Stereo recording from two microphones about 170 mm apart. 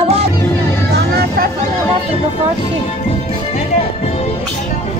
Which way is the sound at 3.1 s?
35° left (ahead or behind).